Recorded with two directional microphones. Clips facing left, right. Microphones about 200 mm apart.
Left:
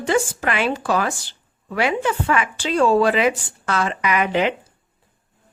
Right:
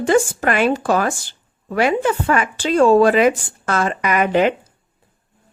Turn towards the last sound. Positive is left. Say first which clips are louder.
# right 4 dB
turn(degrees=-45)  # may be behind; listen again after turning